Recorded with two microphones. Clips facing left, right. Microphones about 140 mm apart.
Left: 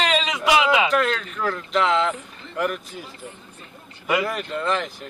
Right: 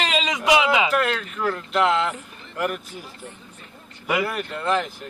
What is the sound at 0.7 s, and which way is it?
Speech, 5° right (ahead or behind).